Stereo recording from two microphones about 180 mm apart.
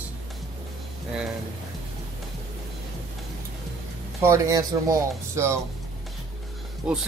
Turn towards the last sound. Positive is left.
turn(degrees=-5)  # may be behind; listen again after turning